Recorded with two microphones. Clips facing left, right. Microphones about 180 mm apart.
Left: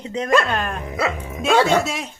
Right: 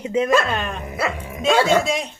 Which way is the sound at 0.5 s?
Centre (ahead or behind).